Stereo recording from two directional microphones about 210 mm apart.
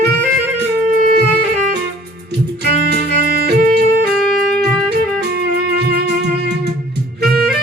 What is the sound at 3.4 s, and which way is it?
Music, 50° right (ahead or behind).